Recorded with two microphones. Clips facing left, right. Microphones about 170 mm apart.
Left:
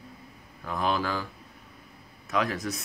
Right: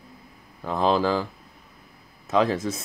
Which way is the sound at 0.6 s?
30° right (ahead or behind).